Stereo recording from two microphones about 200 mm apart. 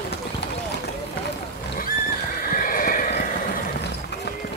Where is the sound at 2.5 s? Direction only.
45° left (ahead or behind).